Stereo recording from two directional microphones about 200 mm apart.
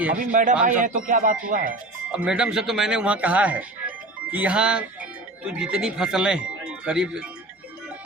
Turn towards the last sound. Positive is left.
turn(degrees=-5)  # may be behind; listen again after turning